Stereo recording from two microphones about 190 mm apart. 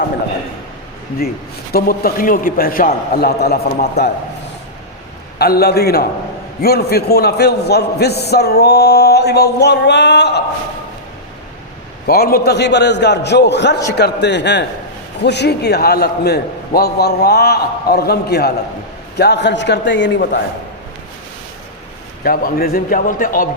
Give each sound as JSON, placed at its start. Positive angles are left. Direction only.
{"t": 1.7, "sound": "a man's voice", "side_deg": 50}
{"t": 5.4, "sound": "a man's voice", "side_deg": 55}
{"t": 12.0, "sound": "a man's voice", "side_deg": 55}
{"t": 22.2, "sound": "a man's voice", "side_deg": 50}